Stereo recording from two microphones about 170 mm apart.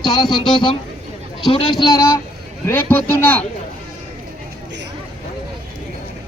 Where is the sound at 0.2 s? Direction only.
25° left (ahead or behind).